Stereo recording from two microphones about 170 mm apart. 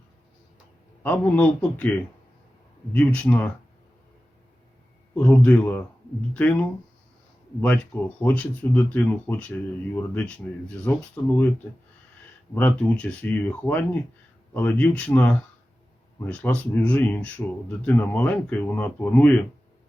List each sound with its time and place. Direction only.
1.0 s speech: 10° left (ahead or behind)
5.1 s speech: 10° left (ahead or behind)
12.5 s speech: 10° left (ahead or behind)